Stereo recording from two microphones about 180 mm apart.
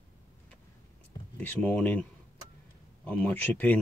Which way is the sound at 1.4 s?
10° left (ahead or behind).